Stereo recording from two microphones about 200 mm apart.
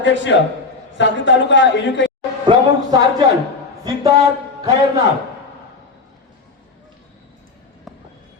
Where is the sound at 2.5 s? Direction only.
20° right (ahead or behind).